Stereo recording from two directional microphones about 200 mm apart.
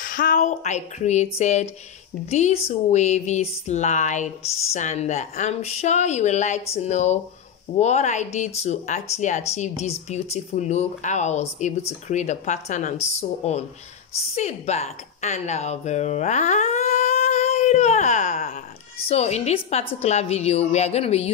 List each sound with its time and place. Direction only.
0.0 s a woman's voice: 45° left (ahead or behind)